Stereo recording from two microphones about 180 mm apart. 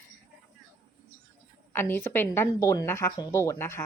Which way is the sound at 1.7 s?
10° left (ahead or behind).